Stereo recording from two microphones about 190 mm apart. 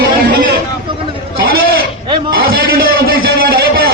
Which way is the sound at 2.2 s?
50° right (ahead or behind).